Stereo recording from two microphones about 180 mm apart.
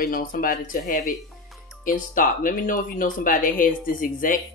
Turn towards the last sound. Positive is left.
turn(degrees=50)  # may be behind; listen again after turning